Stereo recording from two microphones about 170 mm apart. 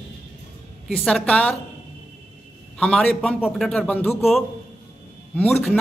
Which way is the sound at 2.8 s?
5° left (ahead or behind).